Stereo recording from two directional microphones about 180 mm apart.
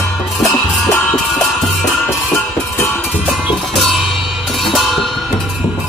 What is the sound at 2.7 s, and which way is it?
Music, 10° left (ahead or behind).